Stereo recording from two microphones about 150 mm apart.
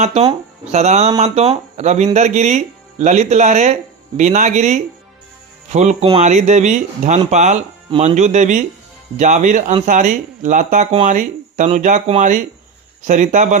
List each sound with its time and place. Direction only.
0.0 s speech: 45° right (ahead or behind)
13.1 s speech: 55° right (ahead or behind)